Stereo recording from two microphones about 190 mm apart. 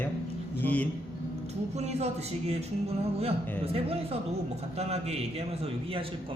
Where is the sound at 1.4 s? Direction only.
35° right (ahead or behind).